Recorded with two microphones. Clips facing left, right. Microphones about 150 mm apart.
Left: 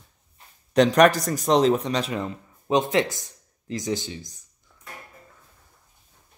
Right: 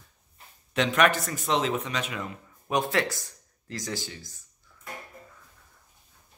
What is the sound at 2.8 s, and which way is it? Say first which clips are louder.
Speech: left 4 dB; 20° left (ahead or behind).